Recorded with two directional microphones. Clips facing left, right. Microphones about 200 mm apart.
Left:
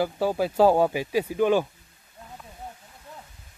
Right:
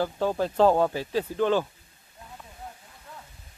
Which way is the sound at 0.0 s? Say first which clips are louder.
Left 2 dB; 10° left (ahead or behind).